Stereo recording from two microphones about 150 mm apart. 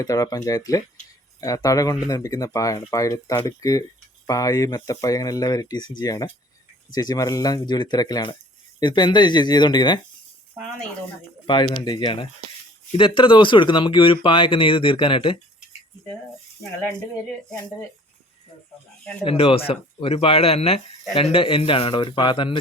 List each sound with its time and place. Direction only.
0.0 s speech: 25° left (ahead or behind)
11.4 s speech: 35° left (ahead or behind)
19.2 s speech: 35° left (ahead or behind)